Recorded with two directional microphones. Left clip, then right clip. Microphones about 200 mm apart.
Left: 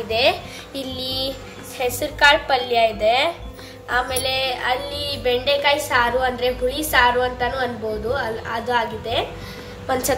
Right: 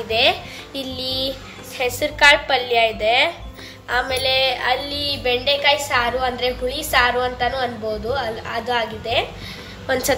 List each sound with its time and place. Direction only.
0.1 s a woman's voice: centre (ahead or behind)